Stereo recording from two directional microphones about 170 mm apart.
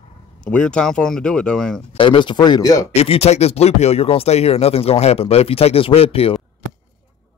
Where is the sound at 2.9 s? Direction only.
35° left (ahead or behind).